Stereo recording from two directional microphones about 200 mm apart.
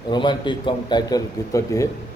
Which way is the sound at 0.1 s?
25° left (ahead or behind).